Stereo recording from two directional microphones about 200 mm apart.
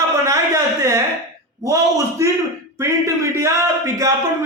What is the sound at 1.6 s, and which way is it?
A man's voice, 15° right (ahead or behind).